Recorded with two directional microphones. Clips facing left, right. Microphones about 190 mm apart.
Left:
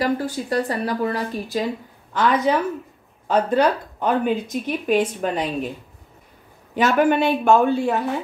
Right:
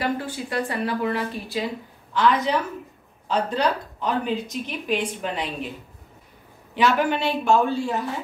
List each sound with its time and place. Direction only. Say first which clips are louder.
0.0 s speech: left 4 dB; 40° left (ahead or behind)
6.7 s speech: left 4 dB; 45° left (ahead or behind)